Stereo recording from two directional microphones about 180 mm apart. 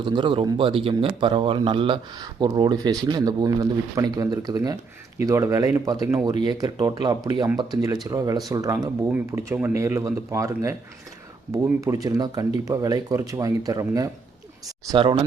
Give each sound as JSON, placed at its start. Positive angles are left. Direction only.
{"t": 0.0, "sound": "speech", "side_deg": -30}